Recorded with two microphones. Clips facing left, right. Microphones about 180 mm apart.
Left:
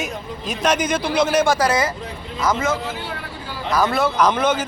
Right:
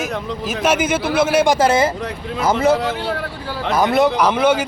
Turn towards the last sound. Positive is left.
turn(degrees=-10)  # may be behind; listen again after turning